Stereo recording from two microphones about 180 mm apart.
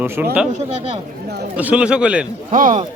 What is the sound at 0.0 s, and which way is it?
Speech, 10° right (ahead or behind).